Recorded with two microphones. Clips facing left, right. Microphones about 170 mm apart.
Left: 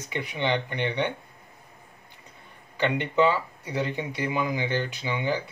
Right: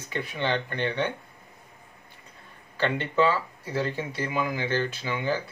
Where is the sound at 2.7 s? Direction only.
15° left (ahead or behind).